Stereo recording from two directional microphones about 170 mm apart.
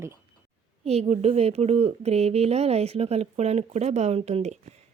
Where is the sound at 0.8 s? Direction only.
40° right (ahead or behind).